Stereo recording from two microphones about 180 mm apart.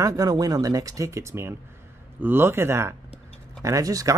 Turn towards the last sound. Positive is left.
turn(degrees=-20)  # may be behind; listen again after turning